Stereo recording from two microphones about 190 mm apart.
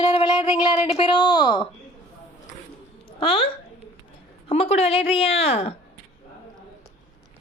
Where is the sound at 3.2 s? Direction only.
30° left (ahead or behind).